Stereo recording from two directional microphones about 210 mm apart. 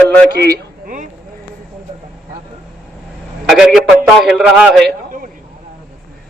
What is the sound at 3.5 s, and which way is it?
A man's voice, centre (ahead or behind).